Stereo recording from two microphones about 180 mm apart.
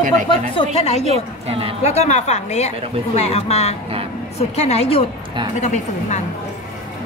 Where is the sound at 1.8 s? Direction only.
40° left (ahead or behind).